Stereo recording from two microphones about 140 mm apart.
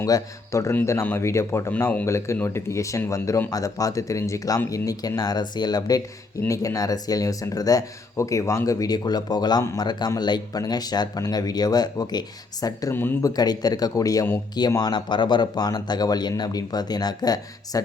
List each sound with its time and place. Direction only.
0.0 s speech: 20° left (ahead or behind)
13.3 s speech: 30° left (ahead or behind)